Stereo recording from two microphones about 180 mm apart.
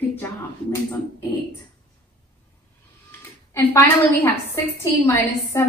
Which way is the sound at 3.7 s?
10° left (ahead or behind).